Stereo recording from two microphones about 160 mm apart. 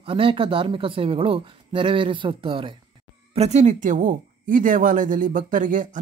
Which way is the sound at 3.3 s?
45° right (ahead or behind).